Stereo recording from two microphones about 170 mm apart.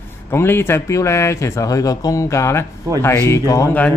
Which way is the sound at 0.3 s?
15° left (ahead or behind).